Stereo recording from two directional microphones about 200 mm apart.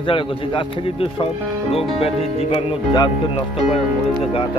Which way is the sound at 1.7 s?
30° left (ahead or behind).